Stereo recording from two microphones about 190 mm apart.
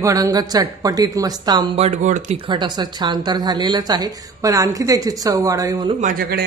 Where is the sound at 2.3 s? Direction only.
25° right (ahead or behind).